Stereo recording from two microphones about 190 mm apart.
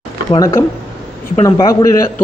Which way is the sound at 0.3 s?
20° left (ahead or behind).